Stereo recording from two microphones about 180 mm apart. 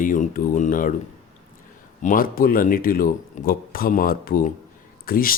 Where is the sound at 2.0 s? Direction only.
50° left (ahead or behind).